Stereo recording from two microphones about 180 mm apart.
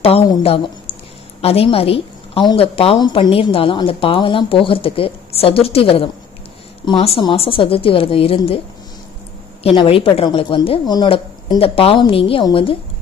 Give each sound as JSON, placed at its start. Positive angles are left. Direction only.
{"t": 0.0, "sound": "a woman's voice", "side_deg": 30}
{"t": 9.6, "sound": "a woman's voice", "side_deg": 30}